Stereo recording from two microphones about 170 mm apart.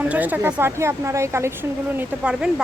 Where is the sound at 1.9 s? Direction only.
5° right (ahead or behind).